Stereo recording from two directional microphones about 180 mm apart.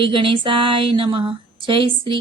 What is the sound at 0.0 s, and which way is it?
Speech, 30° right (ahead or behind).